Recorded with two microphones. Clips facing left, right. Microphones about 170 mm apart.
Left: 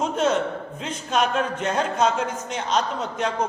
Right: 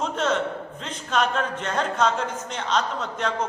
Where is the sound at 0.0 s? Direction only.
10° left (ahead or behind).